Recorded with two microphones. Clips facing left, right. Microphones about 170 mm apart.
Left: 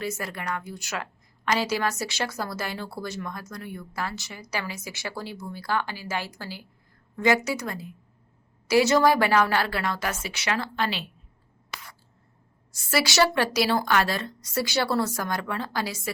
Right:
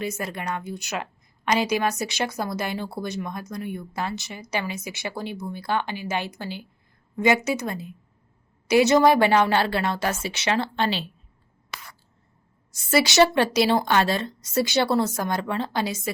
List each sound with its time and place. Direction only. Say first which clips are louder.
0.0 s speech: right 2 dB; 20° right (ahead or behind)
12.7 s speech: right 4 dB; 20° right (ahead or behind)